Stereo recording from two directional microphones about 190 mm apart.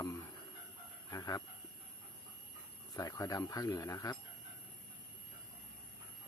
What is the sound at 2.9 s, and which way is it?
Speech, 20° left (ahead or behind).